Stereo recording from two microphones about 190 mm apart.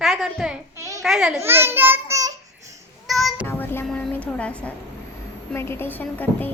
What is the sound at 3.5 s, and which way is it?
Child singing, 10° left (ahead or behind).